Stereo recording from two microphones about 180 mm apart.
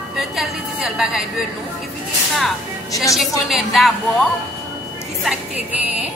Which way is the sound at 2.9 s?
20° left (ahead or behind).